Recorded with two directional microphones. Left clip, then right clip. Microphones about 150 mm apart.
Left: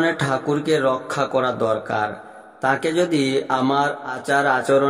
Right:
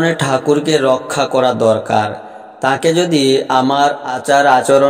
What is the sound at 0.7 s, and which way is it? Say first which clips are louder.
A man's voice: right 6 dB; 25° right (ahead or behind).